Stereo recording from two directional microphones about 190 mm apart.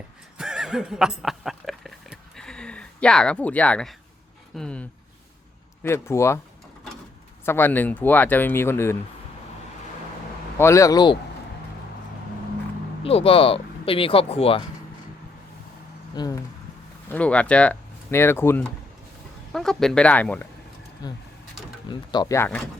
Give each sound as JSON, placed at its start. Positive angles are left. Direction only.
{"t": 0.3, "sound": "neigh", "side_deg": -5}
{"t": 4.5, "sound": "a sound", "side_deg": 5}
{"t": 5.8, "sound": "speech", "side_deg": 15}
{"t": 7.4, "sound": "speech", "side_deg": 10}
{"t": 10.6, "sound": "speech", "side_deg": 15}
{"t": 13.0, "sound": "speech", "side_deg": 30}
{"t": 16.1, "sound": "speech", "side_deg": 20}
{"t": 17.1, "sound": "speech", "side_deg": 5}
{"t": 21.0, "sound": "speech", "side_deg": 20}